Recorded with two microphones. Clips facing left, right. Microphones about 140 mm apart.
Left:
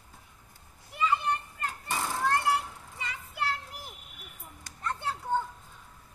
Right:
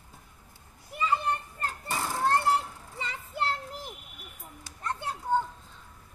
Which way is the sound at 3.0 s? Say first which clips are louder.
Right 3 dB; 30° right (ahead or behind).